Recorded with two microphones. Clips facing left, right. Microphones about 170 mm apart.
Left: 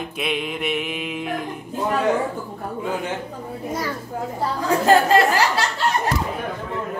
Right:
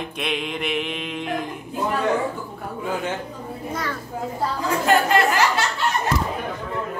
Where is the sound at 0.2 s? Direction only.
Centre (ahead or behind).